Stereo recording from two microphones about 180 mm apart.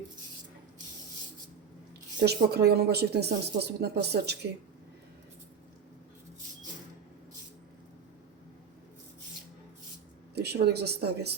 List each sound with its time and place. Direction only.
2.2 s a woman's voice: 65° right (ahead or behind)
10.3 s a woman's voice: 65° right (ahead or behind)